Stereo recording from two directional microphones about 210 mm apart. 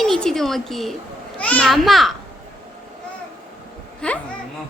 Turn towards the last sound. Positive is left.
turn(degrees=5)  # may be behind; listen again after turning